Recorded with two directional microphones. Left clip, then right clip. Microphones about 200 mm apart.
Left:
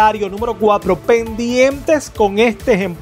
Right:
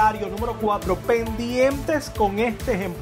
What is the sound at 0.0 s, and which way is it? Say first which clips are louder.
Speech: left 7 dB; 30° left (ahead or behind).